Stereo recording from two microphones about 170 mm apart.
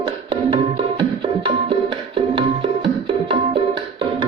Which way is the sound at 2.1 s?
30° right (ahead or behind).